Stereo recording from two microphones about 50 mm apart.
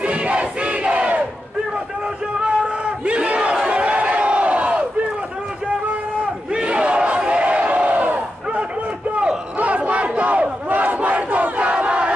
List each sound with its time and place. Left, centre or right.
0.0 s battle cry: right
2.6 s crowd: right
6.5 s crowd: right
9.6 s battle cry: right